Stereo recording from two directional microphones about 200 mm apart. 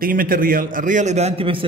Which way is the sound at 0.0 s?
45° right (ahead or behind).